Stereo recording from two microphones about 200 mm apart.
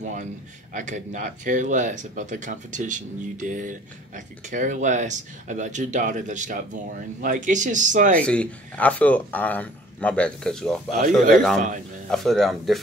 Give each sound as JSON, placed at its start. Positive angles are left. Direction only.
{"t": 0.0, "sound": "speech", "side_deg": -40}
{"t": 8.2, "sound": "speech", "side_deg": 5}
{"t": 11.0, "sound": "speech", "side_deg": -40}
{"t": 11.3, "sound": "speech", "side_deg": 0}